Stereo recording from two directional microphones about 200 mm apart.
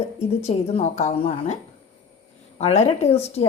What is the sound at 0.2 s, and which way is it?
Mantra, 30° left (ahead or behind).